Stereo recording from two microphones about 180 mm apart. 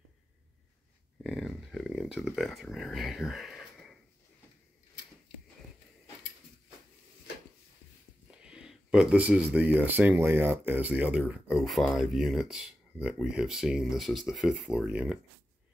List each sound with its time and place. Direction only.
1.2 s speech: centre (ahead or behind)
8.3 s speech: 5° right (ahead or behind)